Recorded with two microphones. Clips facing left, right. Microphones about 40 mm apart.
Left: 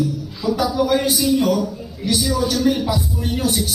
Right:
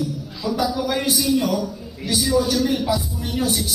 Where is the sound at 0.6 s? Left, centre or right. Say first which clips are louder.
Left 4 dB; left.